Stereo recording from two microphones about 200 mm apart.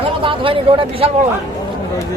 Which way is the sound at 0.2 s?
25° right (ahead or behind).